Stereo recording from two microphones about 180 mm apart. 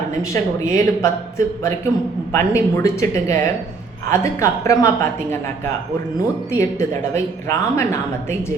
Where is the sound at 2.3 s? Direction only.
15° left (ahead or behind).